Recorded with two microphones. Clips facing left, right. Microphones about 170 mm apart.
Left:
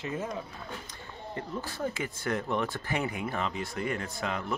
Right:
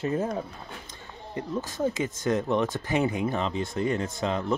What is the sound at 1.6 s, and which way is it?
Speech, 20° right (ahead or behind).